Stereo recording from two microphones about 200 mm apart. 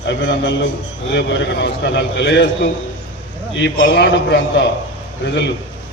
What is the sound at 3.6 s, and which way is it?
A man's voice, 60° left (ahead or behind).